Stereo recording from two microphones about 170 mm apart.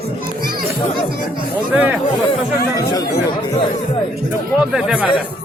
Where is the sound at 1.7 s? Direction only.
10° right (ahead or behind).